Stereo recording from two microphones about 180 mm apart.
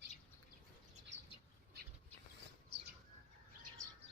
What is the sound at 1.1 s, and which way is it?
Bird flight, 80° right.